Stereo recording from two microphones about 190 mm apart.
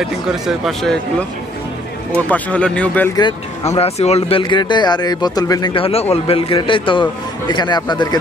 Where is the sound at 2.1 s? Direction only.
5° left (ahead or behind).